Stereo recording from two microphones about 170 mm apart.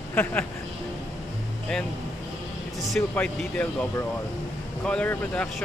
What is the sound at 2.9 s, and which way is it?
Speech, 5° left (ahead or behind).